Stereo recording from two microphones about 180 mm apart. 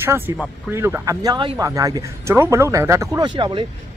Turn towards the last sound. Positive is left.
turn(degrees=-25)  # may be behind; listen again after turning